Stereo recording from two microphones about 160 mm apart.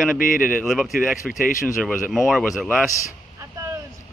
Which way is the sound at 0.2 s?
60° left (ahead or behind).